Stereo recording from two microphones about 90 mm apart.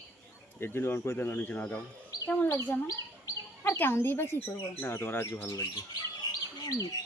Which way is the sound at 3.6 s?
25° left (ahead or behind).